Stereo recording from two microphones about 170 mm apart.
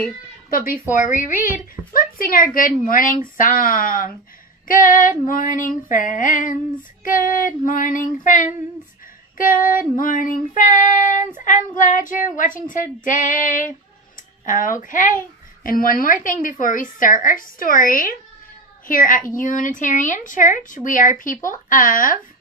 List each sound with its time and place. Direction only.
0.5 s a woman's voice: 55° left (ahead or behind)
0.8 s speech: 10° right (ahead or behind)
1.9 s speech: 55° left (ahead or behind)
9.9 s speech: 55° left (ahead or behind)